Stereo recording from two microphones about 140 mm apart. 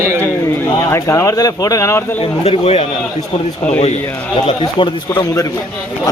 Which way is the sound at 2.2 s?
45° left (ahead or behind).